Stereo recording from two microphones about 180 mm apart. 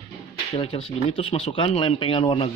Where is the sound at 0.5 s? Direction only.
30° left (ahead or behind).